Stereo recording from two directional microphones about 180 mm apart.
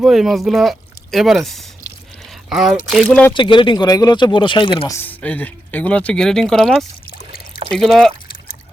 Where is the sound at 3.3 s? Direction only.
25° left (ahead or behind).